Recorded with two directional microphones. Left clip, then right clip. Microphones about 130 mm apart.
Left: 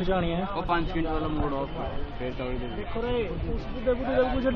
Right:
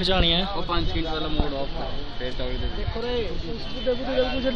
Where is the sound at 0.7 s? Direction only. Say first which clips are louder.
Left 1 dB; 20° left (ahead or behind).